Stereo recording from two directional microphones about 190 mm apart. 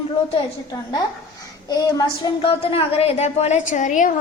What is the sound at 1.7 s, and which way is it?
A woman's voice, 20° left (ahead or behind).